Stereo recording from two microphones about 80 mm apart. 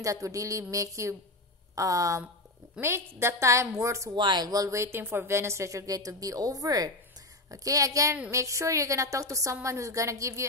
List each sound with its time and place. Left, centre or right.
0.0 s speech: right
2.8 s a woman's voice: right
4.1 s speech: right
4.5 s a woman's voice: right